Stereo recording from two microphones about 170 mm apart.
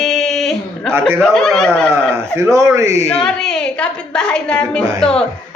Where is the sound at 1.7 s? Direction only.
15° right (ahead or behind).